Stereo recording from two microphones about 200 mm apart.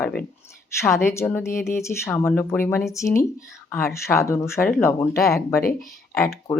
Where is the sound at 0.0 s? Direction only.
5° left (ahead or behind).